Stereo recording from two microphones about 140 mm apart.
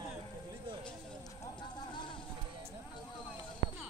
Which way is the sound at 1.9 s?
35° left (ahead or behind).